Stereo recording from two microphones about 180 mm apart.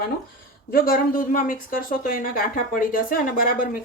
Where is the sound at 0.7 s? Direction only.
55° left (ahead or behind).